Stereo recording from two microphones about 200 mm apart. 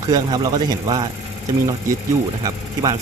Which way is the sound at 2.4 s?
15° right (ahead or behind).